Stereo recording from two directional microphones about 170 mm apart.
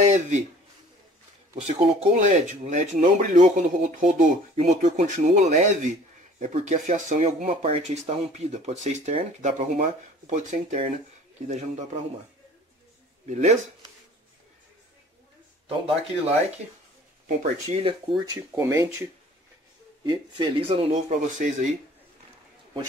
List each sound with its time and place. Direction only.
0.0 s speech: 45° right (ahead or behind)
1.6 s speech: 35° right (ahead or behind)
13.3 s speech: 45° right (ahead or behind)
16.0 s speech: 40° right (ahead or behind)
18.2 s speech: 20° right (ahead or behind)
20.1 s speech: 30° right (ahead or behind); by 21.6 s 45° right (ahead or behind)